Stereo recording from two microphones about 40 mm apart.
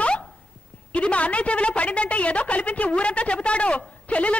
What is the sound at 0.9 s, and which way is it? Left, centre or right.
A woman's voice, left.